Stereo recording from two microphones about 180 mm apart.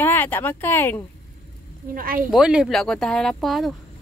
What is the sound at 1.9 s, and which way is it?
Speech, 50° right (ahead or behind).